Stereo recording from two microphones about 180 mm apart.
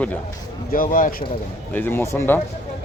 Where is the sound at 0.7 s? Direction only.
50° left (ahead or behind).